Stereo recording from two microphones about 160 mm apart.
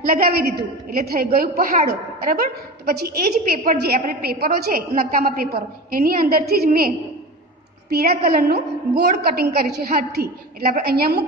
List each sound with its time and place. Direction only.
0.0 s a woman's voice: 65° right (ahead or behind)
3.8 s a woman's voice: 75° right (ahead or behind)
6.4 s a woman's voice: 75° right (ahead or behind)
7.9 s a woman's voice: 75° right (ahead or behind)